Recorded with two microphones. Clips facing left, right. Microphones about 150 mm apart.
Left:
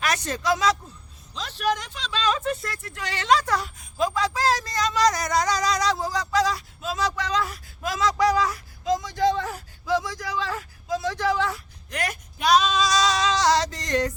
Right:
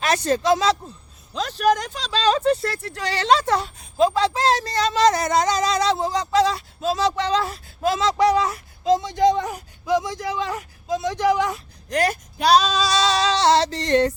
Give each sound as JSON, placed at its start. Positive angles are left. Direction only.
{"t": 0.0, "sound": "speech", "side_deg": -30}
{"t": 1.3, "sound": "speech", "side_deg": -45}
{"t": 11.9, "sound": "female singing", "side_deg": -35}